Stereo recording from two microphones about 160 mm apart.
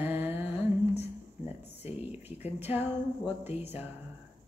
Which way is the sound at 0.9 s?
40° left (ahead or behind).